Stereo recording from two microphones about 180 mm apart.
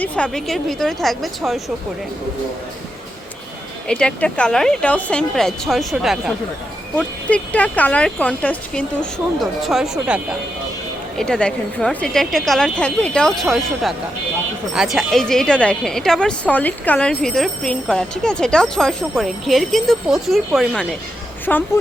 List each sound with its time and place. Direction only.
0.0 s a woman's voice: 5° left (ahead or behind)
3.8 s a woman's voice: 5° left (ahead or behind)